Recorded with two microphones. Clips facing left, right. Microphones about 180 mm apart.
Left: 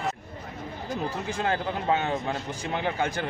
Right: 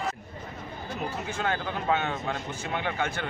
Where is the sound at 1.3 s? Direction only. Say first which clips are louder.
Left 3 dB; 35° left (ahead or behind).